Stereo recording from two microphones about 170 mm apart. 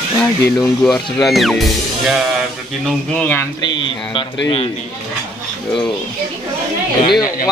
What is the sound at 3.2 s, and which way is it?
Speech, 10° left (ahead or behind).